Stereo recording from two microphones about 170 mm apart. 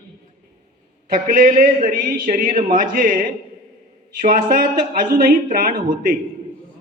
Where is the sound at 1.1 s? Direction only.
55° right (ahead or behind).